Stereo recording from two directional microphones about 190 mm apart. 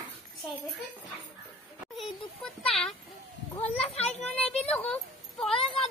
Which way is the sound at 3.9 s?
35° left (ahead or behind).